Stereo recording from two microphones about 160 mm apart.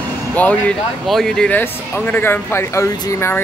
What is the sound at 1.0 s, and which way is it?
Speech, centre (ahead or behind).